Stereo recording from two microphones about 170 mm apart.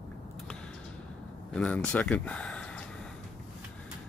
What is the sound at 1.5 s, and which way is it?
Speech, 5° left (ahead or behind).